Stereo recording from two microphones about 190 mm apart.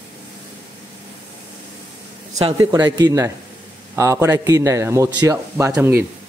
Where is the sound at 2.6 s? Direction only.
20° right (ahead or behind).